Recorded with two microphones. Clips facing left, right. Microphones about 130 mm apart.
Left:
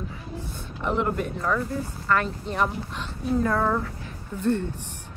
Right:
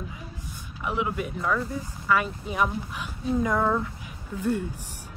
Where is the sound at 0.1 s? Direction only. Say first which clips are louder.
Left 5 dB; 15° right (ahead or behind).